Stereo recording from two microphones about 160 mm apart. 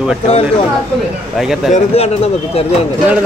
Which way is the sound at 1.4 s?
Centre (ahead or behind).